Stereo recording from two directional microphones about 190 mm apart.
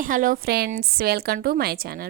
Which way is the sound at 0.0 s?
45° right (ahead or behind).